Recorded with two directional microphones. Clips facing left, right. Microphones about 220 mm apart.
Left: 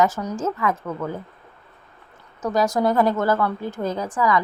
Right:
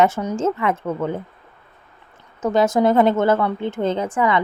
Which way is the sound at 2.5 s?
25° right (ahead or behind).